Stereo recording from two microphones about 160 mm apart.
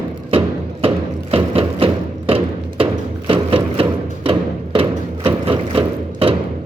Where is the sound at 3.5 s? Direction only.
35° right (ahead or behind).